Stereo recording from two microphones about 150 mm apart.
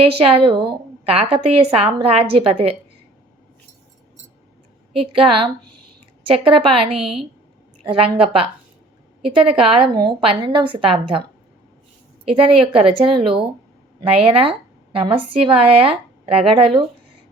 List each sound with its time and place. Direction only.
0.2 s a woman's voice: 35° right (ahead or behind)
5.1 s a woman's voice: 35° right (ahead or behind)
12.3 s a woman's voice: 35° right (ahead or behind)